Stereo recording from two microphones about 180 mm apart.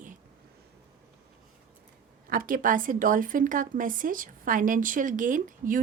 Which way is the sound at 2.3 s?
50° right (ahead or behind).